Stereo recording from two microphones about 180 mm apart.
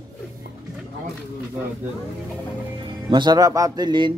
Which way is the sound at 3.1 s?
25° right (ahead or behind).